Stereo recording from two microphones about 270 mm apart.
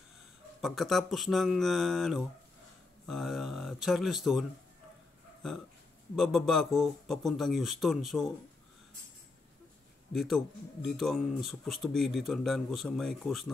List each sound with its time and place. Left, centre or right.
0.6 s speech: centre
6.1 s speech: centre
10.1 s speech: centre